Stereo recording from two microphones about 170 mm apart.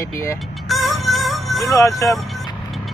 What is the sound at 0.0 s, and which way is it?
Speech, 15° left (ahead or behind).